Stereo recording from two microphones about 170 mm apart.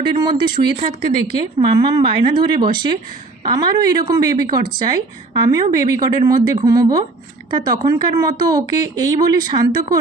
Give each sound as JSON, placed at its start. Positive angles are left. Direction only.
{"t": 0.0, "sound": "a woman's voice", "side_deg": -25}